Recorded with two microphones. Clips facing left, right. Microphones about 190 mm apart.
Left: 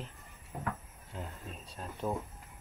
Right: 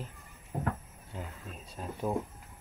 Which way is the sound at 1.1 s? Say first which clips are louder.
Right 1 dB; 5° right (ahead or behind).